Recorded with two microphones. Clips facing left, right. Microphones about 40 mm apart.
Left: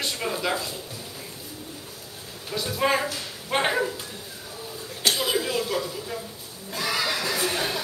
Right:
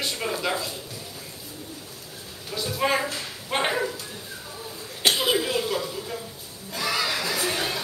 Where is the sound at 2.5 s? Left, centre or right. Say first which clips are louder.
Left 1 dB; centre.